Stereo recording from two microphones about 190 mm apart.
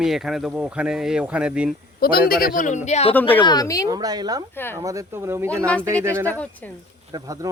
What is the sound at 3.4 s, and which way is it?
Speech, 20° left (ahead or behind).